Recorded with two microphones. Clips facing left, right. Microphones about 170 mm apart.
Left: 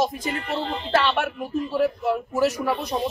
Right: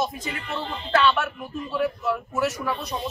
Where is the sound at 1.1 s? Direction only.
35° left (ahead or behind).